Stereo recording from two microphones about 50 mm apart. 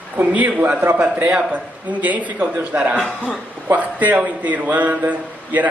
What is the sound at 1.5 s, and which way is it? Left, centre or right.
Speech, right.